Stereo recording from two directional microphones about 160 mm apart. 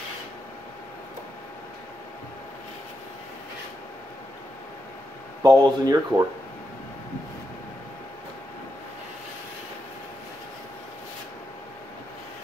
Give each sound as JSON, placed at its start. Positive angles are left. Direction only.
{"t": 5.4, "sound": "speech", "side_deg": -25}